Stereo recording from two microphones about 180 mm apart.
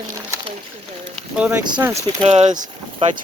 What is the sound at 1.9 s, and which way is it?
Speech, 35° right (ahead or behind).